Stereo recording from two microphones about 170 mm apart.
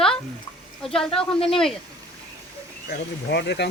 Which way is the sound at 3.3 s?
80° left.